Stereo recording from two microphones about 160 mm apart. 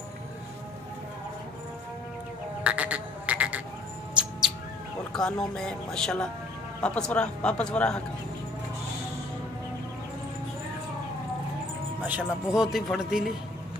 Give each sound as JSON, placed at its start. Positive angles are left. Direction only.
{"t": 2.6, "sound": "frog", "side_deg": -10}
{"t": 5.1, "sound": "speech", "side_deg": 5}
{"t": 12.0, "sound": "speech", "side_deg": -10}